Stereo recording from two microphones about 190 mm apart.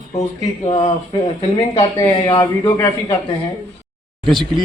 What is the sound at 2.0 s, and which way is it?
Speech, 15° left (ahead or behind).